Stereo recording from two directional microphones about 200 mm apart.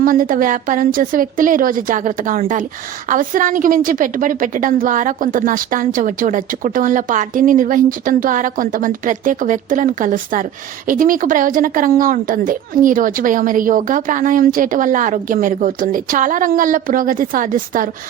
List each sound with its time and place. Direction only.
0.0 s a woman's voice: 45° right (ahead or behind)